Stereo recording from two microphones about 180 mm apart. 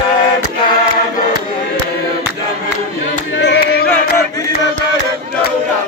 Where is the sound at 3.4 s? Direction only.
70° left (ahead or behind).